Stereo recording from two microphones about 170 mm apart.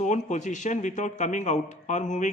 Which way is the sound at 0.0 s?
45° left (ahead or behind).